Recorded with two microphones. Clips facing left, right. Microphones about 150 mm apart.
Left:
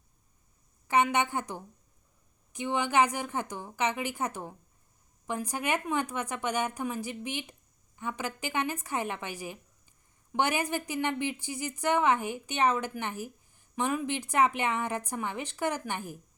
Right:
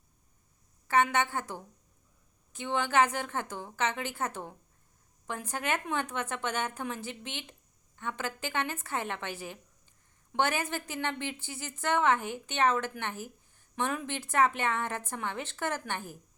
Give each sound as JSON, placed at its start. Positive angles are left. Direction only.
{"t": 0.9, "sound": "a woman's voice", "side_deg": 15}